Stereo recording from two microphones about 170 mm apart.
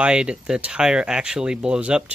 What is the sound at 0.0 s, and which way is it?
Speech, 5° right (ahead or behind).